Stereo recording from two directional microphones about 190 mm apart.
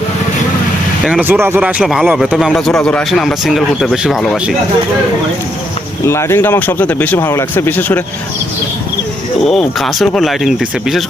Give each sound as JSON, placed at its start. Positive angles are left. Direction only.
{"t": 1.2, "sound": "speech", "side_deg": -10}
{"t": 6.1, "sound": "speech", "side_deg": 15}
{"t": 9.4, "sound": "speech", "side_deg": 0}